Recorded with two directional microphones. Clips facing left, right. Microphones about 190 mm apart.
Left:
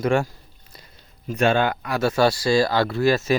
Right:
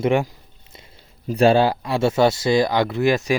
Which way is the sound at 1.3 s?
35° right (ahead or behind).